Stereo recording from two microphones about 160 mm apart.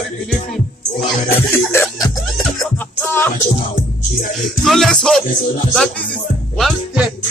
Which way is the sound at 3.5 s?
60° left (ahead or behind).